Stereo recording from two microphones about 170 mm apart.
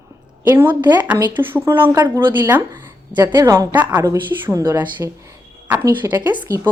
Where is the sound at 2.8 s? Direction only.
10° right (ahead or behind).